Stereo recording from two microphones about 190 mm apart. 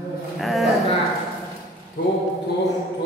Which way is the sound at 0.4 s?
Centre (ahead or behind).